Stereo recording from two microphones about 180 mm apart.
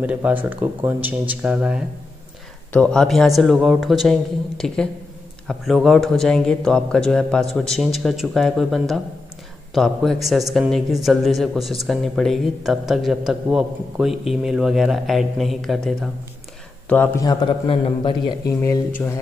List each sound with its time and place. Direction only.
0.0 s speech: 5° right (ahead or behind)
2.7 s speech: 5° left (ahead or behind)
17.2 s a man's voice: 25° left (ahead or behind)
18.6 s speech: 10° left (ahead or behind)